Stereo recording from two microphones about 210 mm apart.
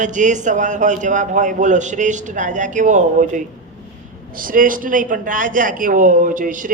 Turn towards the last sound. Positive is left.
turn(degrees=-40)  # may be behind; listen again after turning